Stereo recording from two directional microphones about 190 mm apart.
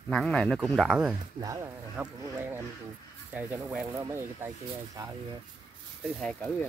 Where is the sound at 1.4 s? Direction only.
15° right (ahead or behind).